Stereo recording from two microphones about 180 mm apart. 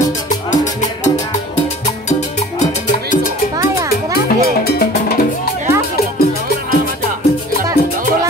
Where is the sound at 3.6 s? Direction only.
20° right (ahead or behind).